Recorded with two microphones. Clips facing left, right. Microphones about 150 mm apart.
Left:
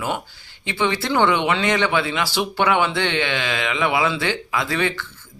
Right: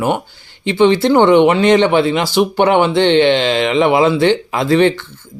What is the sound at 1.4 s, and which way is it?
Speech, 45° right (ahead or behind).